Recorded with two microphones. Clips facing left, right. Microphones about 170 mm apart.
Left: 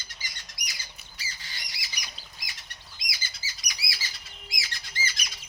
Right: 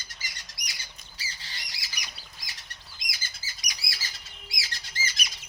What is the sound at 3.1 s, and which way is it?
Chirp, 50° right (ahead or behind).